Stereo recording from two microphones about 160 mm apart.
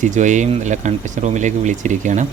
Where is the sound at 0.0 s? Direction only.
50° right (ahead or behind).